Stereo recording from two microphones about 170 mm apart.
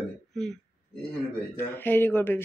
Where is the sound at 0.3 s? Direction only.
Centre (ahead or behind).